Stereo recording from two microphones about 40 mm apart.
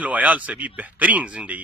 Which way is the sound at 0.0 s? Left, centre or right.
Right.